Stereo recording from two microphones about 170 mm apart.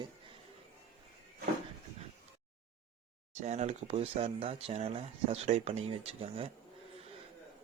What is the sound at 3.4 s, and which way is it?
Speech, 40° right (ahead or behind).